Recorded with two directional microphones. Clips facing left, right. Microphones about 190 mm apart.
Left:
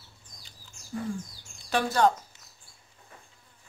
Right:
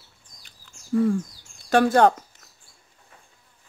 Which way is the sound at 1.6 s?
50° right (ahead or behind).